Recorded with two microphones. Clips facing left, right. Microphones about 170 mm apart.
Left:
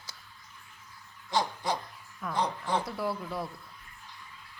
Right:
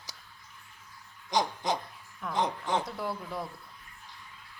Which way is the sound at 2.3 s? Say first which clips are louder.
Right 1 dB; 20° right (ahead or behind).